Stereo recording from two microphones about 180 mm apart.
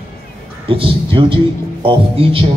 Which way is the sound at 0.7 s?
30° right (ahead or behind).